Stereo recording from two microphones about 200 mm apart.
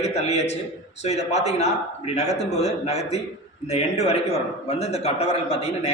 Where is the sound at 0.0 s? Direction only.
35° left (ahead or behind).